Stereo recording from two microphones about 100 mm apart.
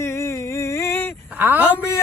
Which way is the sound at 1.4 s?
20° right (ahead or behind).